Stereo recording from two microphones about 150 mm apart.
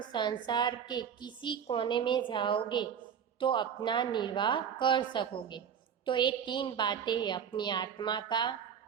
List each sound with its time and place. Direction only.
0.0 s a woman's voice: 30° left (ahead or behind)